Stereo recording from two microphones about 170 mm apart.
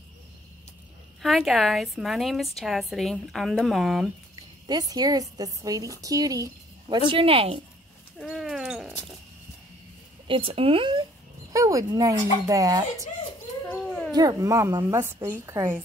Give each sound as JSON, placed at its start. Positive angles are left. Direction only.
{"t": 1.2, "sound": "a woman's voice", "side_deg": 0}
{"t": 4.6, "sound": "a woman's voice", "side_deg": -25}
{"t": 7.1, "sound": "speech", "side_deg": -30}
{"t": 8.2, "sound": "goat", "side_deg": 0}
{"t": 10.2, "sound": "speech", "side_deg": -30}
{"t": 11.5, "sound": "a woman's voice", "side_deg": -20}
{"t": 13.7, "sound": "dog", "side_deg": 5}
{"t": 14.1, "sound": "a woman's voice", "side_deg": -20}